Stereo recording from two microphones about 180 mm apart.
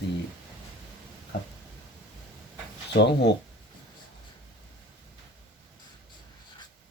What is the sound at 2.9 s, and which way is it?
Speech, 70° left (ahead or behind).